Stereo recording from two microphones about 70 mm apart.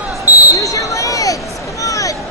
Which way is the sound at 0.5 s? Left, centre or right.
Left.